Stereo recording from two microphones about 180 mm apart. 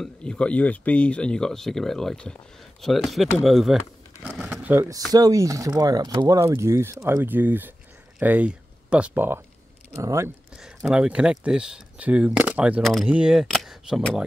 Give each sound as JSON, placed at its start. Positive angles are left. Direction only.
{"t": 0.0, "sound": "speech", "side_deg": 5}
{"t": 10.5, "sound": "speech", "side_deg": -5}